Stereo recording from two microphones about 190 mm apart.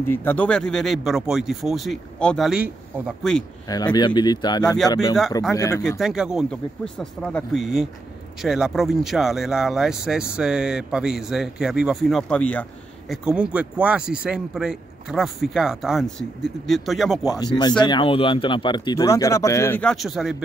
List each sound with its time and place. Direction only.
0.0 s speech: 10° left (ahead or behind)
3.6 s speech: 20° left (ahead or behind)
5.9 s speech: centre (ahead or behind)
13.1 s speech: 5° right (ahead or behind)
17.2 s speech: 20° left (ahead or behind); by 20.4 s centre (ahead or behind)